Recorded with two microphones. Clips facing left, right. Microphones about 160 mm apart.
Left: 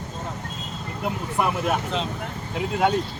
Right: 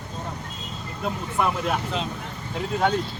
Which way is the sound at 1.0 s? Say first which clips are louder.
Even; 10° left (ahead or behind).